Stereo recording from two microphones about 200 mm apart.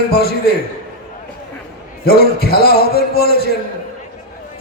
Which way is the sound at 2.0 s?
50° left (ahead or behind).